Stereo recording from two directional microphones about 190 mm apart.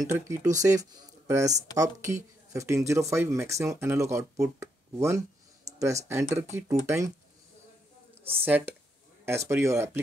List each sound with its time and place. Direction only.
0.1 s speech: 15° right (ahead or behind)
8.1 s speech: 10° right (ahead or behind)